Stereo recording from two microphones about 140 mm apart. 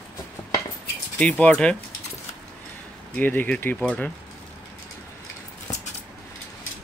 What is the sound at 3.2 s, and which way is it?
Speech, 10° left (ahead or behind).